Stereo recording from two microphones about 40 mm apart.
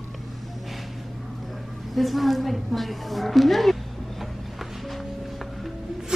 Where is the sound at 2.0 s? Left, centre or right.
Centre.